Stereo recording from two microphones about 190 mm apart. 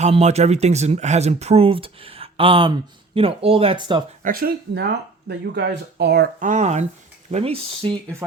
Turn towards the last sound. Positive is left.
turn(degrees=-30)  # may be behind; listen again after turning